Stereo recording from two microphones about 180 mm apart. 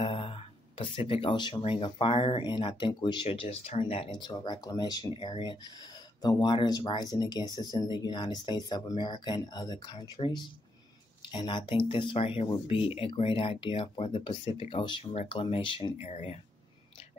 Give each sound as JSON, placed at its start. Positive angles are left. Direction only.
{"t": 0.0, "sound": "speech", "side_deg": 30}